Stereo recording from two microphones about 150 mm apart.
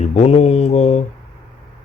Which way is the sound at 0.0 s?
45° left (ahead or behind).